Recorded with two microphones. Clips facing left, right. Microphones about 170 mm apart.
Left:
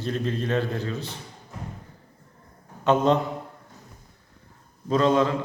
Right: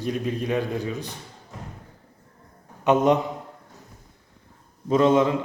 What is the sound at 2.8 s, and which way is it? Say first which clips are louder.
Speech: right 2 dB; 15° right (ahead or behind).